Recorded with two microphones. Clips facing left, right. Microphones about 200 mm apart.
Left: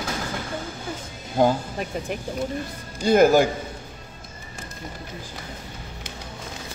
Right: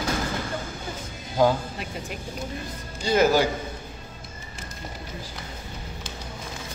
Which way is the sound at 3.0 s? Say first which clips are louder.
Left 4 dB; 50° left (ahead or behind).